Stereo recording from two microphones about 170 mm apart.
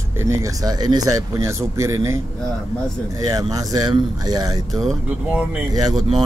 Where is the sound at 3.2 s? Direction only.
20° right (ahead or behind).